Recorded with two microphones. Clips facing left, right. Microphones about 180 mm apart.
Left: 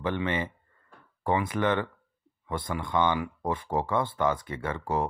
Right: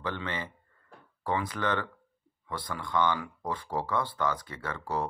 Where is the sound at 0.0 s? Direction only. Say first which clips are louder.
Left 6 dB; 20° left (ahead or behind).